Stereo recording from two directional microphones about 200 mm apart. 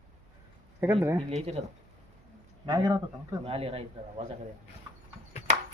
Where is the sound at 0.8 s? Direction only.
15° right (ahead or behind).